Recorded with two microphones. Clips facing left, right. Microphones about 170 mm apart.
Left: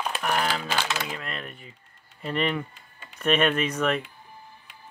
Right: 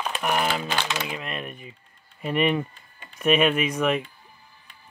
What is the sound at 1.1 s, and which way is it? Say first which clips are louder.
Speech: right 3 dB; 15° right (ahead or behind).